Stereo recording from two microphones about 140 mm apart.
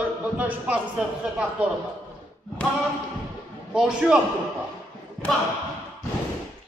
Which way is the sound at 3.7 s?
5° right (ahead or behind).